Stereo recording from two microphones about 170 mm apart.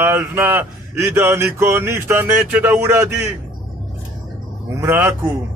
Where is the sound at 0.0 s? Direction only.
15° right (ahead or behind).